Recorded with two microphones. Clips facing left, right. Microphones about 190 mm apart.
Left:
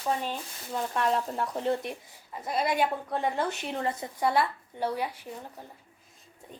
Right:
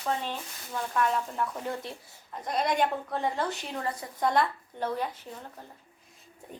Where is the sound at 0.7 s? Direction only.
30° left (ahead or behind).